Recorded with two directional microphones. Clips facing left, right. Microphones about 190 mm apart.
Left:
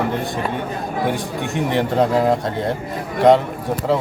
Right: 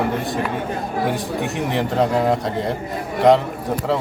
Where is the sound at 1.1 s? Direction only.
Centre (ahead or behind).